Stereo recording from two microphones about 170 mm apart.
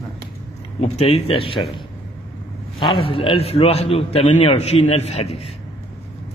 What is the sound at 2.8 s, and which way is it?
A man's voice, 35° left (ahead or behind).